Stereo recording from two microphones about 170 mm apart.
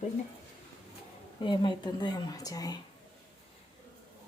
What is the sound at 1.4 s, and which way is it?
Speech, 25° left (ahead or behind).